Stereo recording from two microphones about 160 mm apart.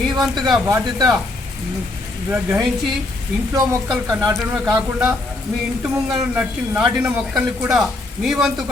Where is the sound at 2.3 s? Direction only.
10° right (ahead or behind).